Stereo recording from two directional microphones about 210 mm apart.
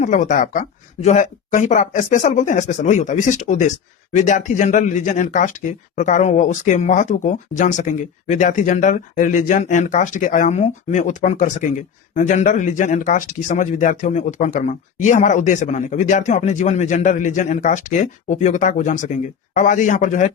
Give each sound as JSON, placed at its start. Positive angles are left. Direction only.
{"t": 0.0, "sound": "speech", "side_deg": 35}